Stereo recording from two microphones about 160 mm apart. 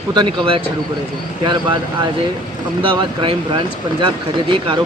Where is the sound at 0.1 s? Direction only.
30° right (ahead or behind).